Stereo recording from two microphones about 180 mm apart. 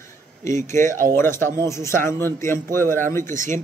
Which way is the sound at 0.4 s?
15° left (ahead or behind).